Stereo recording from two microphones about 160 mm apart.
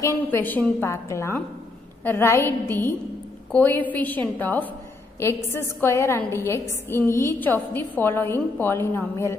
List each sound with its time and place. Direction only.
0.0 s a woman's voice: 15° left (ahead or behind)